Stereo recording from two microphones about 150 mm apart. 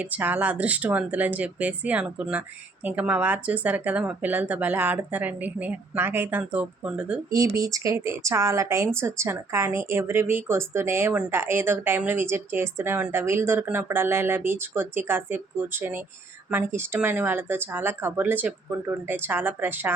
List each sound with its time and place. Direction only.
0.0 s speech: 10° right (ahead or behind)
7.3 s speech: 20° right (ahead or behind)